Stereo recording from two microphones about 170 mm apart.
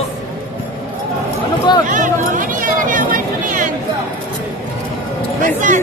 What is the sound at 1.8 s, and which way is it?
Speech, 50° right (ahead or behind).